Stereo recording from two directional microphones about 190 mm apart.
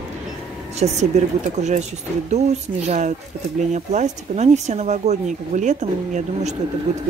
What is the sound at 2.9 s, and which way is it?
Speech, 40° right (ahead or behind).